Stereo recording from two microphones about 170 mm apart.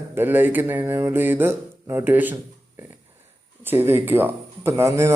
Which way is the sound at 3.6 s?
15° right (ahead or behind).